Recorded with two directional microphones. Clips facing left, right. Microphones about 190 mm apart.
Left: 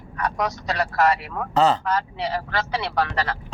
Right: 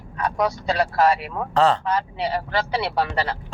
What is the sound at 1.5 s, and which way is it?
Speech, centre (ahead or behind).